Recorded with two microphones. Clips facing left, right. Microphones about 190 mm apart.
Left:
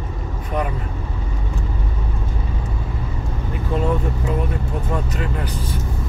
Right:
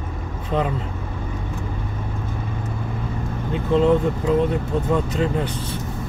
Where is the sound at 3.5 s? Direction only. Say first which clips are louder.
Right 5 dB; 20° right (ahead or behind).